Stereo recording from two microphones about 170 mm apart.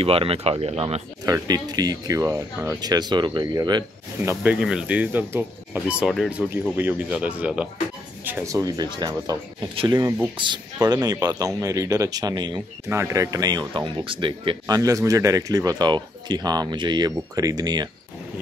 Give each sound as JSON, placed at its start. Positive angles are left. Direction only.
{"t": 0.0, "sound": "speech", "side_deg": -35}
{"t": 1.2, "sound": "speech", "side_deg": -20}
{"t": 4.3, "sound": "speech", "side_deg": -10}